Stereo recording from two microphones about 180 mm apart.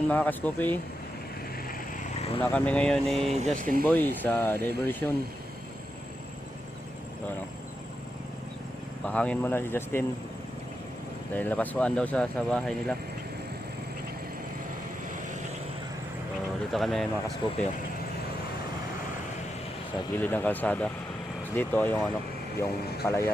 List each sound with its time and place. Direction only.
0.1 s speech: 10° left (ahead or behind)
2.4 s speech: 10° left (ahead or behind)
3.3 s speech: 40° right (ahead or behind)
3.8 s speech: 10° left (ahead or behind)
9.0 s speech: 5° left (ahead or behind)
11.3 s speech: 10° left (ahead or behind)
16.7 s speech: centre (ahead or behind)
20.1 s speech: 10° left (ahead or behind)